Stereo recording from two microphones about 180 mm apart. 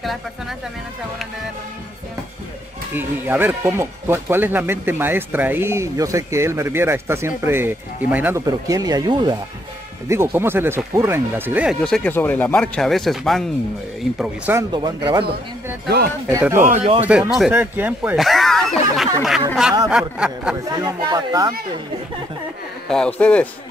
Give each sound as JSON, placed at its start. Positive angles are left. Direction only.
{"t": 0.0, "sound": "speech", "side_deg": 0}
{"t": 2.9, "sound": "speech", "side_deg": -10}
{"t": 11.8, "sound": "speech", "side_deg": 5}
{"t": 14.7, "sound": "speech", "side_deg": -25}
{"t": 16.3, "sound": "speech", "side_deg": -20}
{"t": 16.5, "sound": "speech", "side_deg": -45}
{"t": 17.0, "sound": "speech", "side_deg": -10}
{"t": 20.8, "sound": "speech", "side_deg": -20}
{"t": 22.8, "sound": "speech", "side_deg": 5}